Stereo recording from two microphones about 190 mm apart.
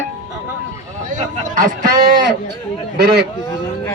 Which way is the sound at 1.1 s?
45° right (ahead or behind).